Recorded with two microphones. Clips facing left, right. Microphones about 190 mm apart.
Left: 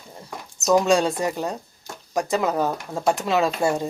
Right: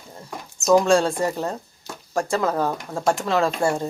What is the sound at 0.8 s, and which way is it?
A woman's voice, 20° left (ahead or behind).